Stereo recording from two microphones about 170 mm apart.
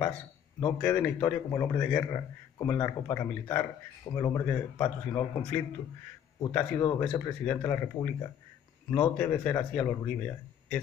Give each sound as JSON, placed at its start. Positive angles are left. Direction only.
{"t": 0.6, "sound": "speech", "side_deg": 10}